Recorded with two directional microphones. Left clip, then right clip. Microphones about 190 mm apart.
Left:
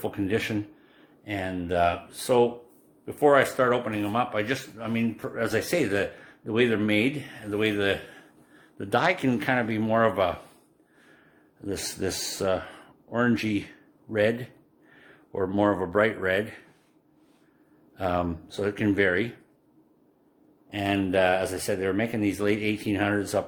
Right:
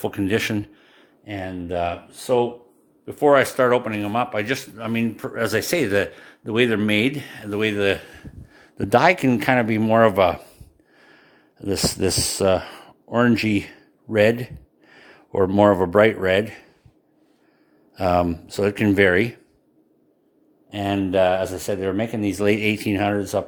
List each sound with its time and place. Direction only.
0.0 s speech: 40° right (ahead or behind)
1.2 s speech: 20° right (ahead or behind); by 16.6 s 35° right (ahead or behind)
17.9 s speech: 40° right (ahead or behind)
20.7 s speech: 35° right (ahead or behind)